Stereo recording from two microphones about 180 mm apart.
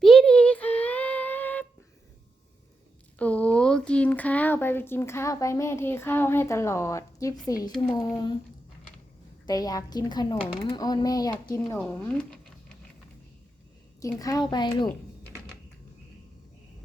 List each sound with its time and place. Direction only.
0.0 s a sound: 5° left (ahead or behind)
3.2 s speech: 10° left (ahead or behind); by 8.4 s 25° left (ahead or behind)
9.5 s speech: 20° left (ahead or behind)
11.8 s speech: 5° left (ahead or behind)
14.2 s speech: 20° left (ahead or behind)